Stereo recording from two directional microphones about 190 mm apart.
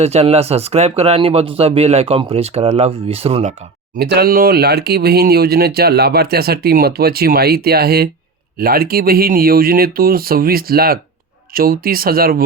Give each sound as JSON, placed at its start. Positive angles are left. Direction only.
{"t": 0.0, "sound": "speech", "side_deg": -35}
{"t": 3.9, "sound": "speech", "side_deg": -55}